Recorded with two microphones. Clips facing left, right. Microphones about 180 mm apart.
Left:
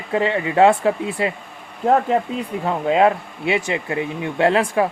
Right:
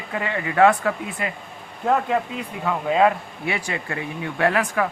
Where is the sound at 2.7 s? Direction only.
25° left (ahead or behind).